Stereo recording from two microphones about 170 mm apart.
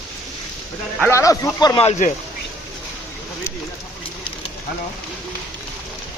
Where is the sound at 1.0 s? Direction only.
15° left (ahead or behind).